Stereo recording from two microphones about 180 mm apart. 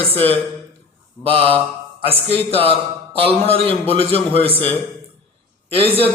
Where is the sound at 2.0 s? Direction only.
30° right (ahead or behind).